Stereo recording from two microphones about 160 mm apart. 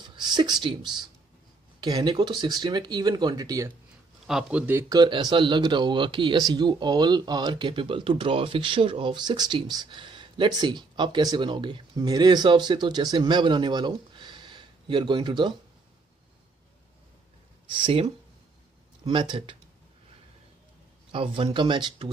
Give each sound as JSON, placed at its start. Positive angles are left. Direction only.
{"t": 0.0, "sound": "speech", "side_deg": -30}
{"t": 4.3, "sound": "speech", "side_deg": -5}
{"t": 17.8, "sound": "speech", "side_deg": -30}
{"t": 21.1, "sound": "speech", "side_deg": -35}